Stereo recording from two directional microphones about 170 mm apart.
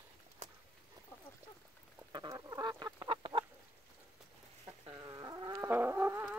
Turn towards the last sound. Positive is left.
turn(degrees=-10)  # may be behind; listen again after turning